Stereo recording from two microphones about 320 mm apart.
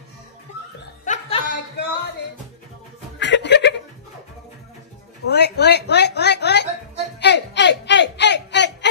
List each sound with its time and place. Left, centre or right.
1.0 s chuckle: left
3.2 s chuckle: left
5.3 s speech: left
7.2 s a sound: left